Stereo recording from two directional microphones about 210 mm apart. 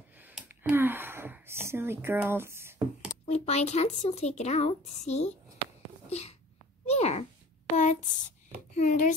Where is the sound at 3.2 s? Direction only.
30° left (ahead or behind).